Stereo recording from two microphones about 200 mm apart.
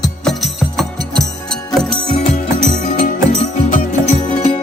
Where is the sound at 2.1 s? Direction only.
35° left (ahead or behind).